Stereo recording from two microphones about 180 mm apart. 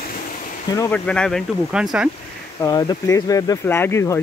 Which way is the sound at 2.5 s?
20° left (ahead or behind).